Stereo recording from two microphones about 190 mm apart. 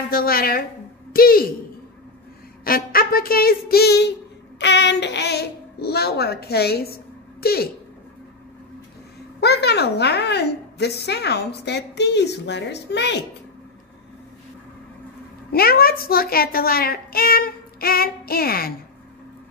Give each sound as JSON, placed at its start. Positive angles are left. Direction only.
{"t": 0.1, "sound": "a child's voice", "side_deg": 50}
{"t": 2.6, "sound": "a child's voice", "side_deg": 50}
{"t": 9.4, "sound": "a woman's voice", "side_deg": 60}
{"t": 15.5, "sound": "a child's voice", "side_deg": 55}